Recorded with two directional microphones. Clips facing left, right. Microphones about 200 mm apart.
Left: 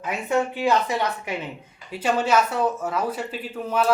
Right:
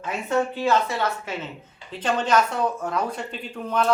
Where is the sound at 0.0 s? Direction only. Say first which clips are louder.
Even; 15° left (ahead or behind).